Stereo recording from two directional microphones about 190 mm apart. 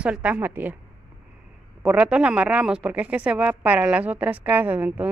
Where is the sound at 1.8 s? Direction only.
5° right (ahead or behind).